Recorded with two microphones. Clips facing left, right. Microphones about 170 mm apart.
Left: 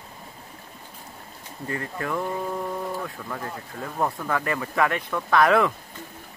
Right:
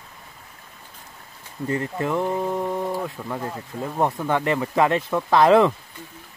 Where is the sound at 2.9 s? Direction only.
20° right (ahead or behind).